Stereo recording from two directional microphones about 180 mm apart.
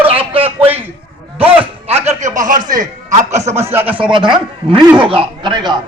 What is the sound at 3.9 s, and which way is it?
Speech, 30° right (ahead or behind).